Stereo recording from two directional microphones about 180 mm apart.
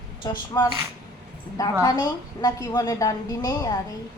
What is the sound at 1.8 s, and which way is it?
A woman's voice, 20° left (ahead or behind).